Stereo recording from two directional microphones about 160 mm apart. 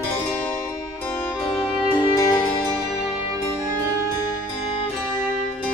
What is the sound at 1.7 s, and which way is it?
Music, 30° left (ahead or behind).